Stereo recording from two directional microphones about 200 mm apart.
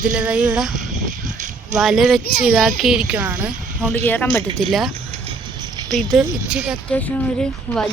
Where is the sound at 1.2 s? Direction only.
40° right (ahead or behind).